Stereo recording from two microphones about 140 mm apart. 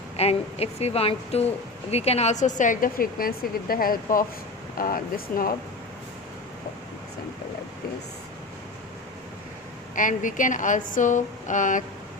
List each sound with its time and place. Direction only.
0.2 s a woman's voice: 45° left (ahead or behind); by 5.5 s 90° left
9.9 s a woman's voice: 70° left (ahead or behind)